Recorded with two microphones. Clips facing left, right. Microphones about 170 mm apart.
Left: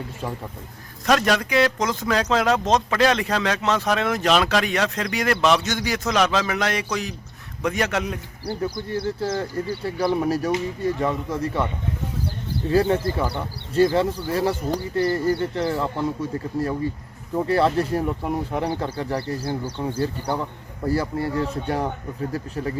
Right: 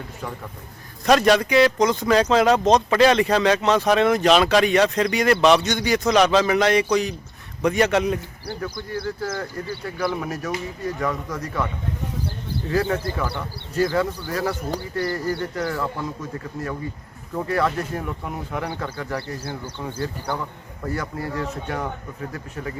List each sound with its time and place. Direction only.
1.0 s speech: centre (ahead or behind)
8.6 s speech: 30° left (ahead or behind)
12.7 s speech: 30° left (ahead or behind)